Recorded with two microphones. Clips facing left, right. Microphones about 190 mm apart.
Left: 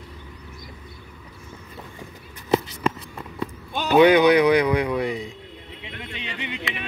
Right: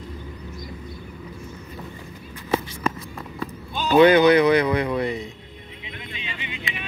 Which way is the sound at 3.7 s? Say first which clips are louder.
Even; 60° left (ahead or behind).